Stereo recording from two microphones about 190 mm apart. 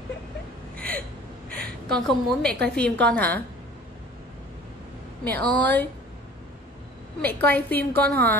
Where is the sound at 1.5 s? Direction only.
5° left (ahead or behind).